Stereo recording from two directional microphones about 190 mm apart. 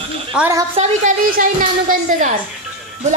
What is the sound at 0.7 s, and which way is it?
Speech, 35° right (ahead or behind).